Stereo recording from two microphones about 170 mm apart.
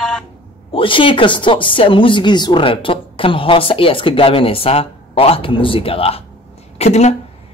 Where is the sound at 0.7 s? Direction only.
30° left (ahead or behind).